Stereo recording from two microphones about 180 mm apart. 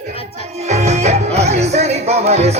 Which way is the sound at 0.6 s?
40° right (ahead or behind).